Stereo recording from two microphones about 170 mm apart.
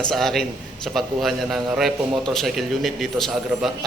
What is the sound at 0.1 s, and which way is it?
A man's voice, centre (ahead or behind).